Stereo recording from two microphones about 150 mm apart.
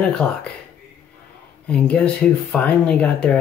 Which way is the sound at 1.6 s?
10° left (ahead or behind).